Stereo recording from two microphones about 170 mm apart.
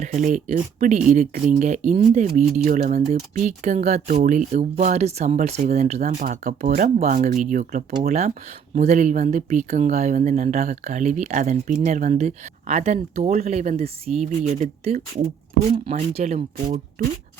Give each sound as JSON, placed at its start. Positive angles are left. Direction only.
{"t": 0.0, "sound": "speech", "side_deg": -45}